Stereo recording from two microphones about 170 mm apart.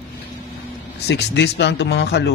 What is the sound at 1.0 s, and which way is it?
Speech, 75° left (ahead or behind).